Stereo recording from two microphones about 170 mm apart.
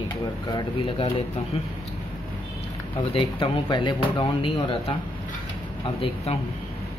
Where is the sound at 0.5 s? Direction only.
25° left (ahead or behind).